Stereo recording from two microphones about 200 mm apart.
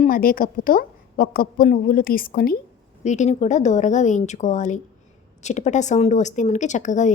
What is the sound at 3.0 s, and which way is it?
Speech, 35° left (ahead or behind).